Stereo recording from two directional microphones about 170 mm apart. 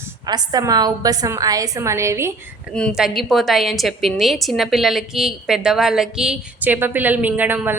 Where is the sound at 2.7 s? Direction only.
Centre (ahead or behind).